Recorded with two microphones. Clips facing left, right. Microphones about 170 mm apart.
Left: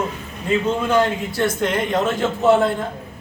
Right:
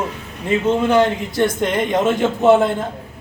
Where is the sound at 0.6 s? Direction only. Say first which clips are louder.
Right 5 dB; 20° right (ahead or behind).